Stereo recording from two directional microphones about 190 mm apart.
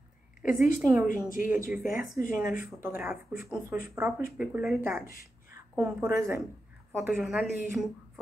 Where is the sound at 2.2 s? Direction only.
15° right (ahead or behind).